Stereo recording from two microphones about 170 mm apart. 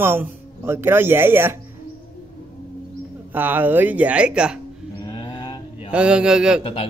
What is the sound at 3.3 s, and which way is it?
A man's voice, 10° right (ahead or behind).